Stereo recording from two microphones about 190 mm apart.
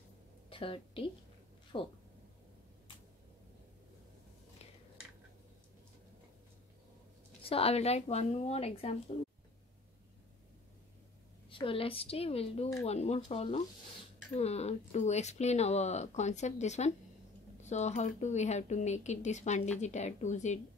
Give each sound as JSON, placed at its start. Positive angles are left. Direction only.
{"t": 0.5, "sound": "a woman's voice", "side_deg": 30}
{"t": 7.4, "sound": "speech", "side_deg": 30}
{"t": 11.5, "sound": "a woman's voice", "side_deg": 30}